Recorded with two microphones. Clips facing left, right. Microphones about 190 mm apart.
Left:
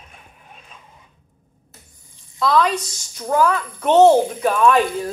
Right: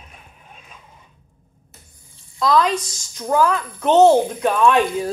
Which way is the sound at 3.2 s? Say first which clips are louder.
Even; 5° right (ahead or behind).